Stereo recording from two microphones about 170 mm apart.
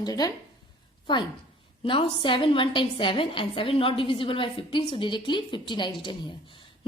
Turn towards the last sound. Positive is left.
turn(degrees=30)  # may be behind; listen again after turning